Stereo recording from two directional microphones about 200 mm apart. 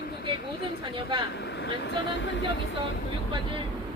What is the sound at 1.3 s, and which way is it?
Speech, 55° left (ahead or behind).